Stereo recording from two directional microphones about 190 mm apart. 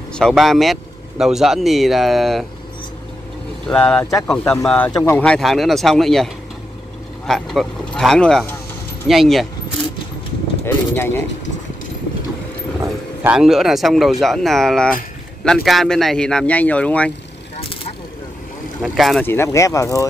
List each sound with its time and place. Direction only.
0.1 s speech: centre (ahead or behind)
3.6 s speech: 5° left (ahead or behind)
10.6 s a sound: 10° left (ahead or behind)
12.8 s speech: 10° right (ahead or behind); by 17.1 s 5° left (ahead or behind)
18.8 s speech: centre (ahead or behind)
19.2 s speech: 15° left (ahead or behind)